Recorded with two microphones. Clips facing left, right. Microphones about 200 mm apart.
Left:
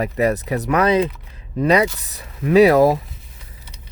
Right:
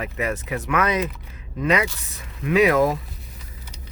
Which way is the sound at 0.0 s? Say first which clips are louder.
Left 8 dB; 35° left (ahead or behind).